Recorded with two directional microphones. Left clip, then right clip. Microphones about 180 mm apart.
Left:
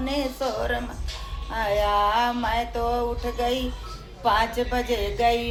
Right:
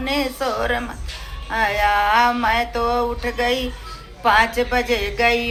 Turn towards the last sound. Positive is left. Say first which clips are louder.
# right 4 dB
turn(degrees=-15)  # may be behind; listen again after turning